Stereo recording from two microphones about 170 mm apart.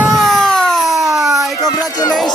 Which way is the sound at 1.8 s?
20° left (ahead or behind).